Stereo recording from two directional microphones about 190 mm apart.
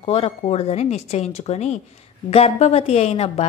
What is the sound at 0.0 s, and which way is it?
A woman's voice, 30° left (ahead or behind).